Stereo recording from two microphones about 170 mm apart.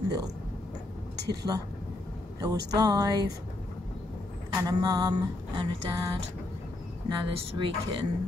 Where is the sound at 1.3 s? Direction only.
20° right (ahead or behind).